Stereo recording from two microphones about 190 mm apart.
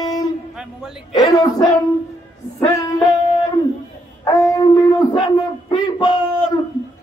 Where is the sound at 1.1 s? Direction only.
20° left (ahead or behind).